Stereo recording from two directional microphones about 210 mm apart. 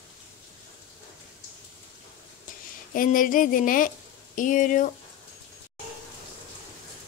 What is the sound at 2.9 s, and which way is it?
Speech, 40° left (ahead or behind).